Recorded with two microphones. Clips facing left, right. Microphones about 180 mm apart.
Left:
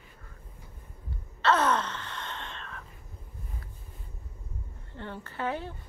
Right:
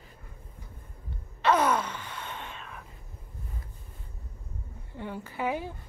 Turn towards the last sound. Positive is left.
turn(degrees=-10)  # may be behind; listen again after turning